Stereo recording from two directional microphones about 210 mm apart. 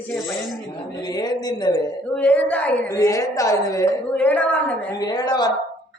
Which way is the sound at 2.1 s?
5° left (ahead or behind).